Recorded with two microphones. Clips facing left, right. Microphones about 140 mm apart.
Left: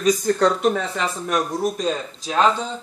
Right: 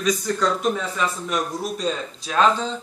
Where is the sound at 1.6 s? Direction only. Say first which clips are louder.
Left 3 dB; 45° left (ahead or behind).